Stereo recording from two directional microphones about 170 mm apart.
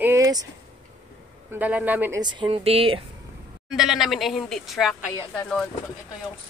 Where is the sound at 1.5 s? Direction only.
10° right (ahead or behind).